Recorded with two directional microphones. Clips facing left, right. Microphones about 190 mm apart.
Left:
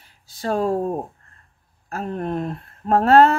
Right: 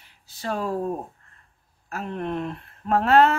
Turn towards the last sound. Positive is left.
turn(degrees=40)  # may be behind; listen again after turning